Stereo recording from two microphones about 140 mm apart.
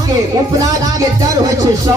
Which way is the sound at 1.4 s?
25° right (ahead or behind).